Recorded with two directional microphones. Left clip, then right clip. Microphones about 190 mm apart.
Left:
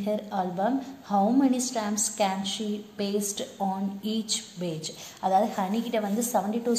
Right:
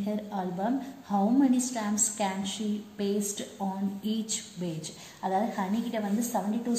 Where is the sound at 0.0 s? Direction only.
20° left (ahead or behind).